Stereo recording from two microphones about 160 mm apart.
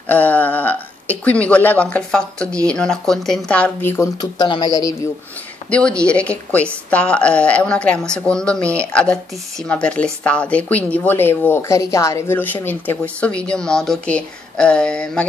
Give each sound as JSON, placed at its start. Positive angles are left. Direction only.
{"t": 0.1, "sound": "a sound", "side_deg": 10}
{"t": 1.2, "sound": "a woman's voice", "side_deg": 10}
{"t": 4.2, "sound": "speech", "side_deg": 25}
{"t": 5.7, "sound": "a woman's voice", "side_deg": 5}